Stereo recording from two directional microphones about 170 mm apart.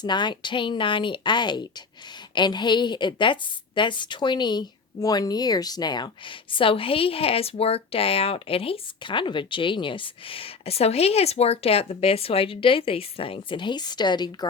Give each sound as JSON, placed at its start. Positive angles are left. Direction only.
{"t": 0.0, "sound": "speech", "side_deg": 25}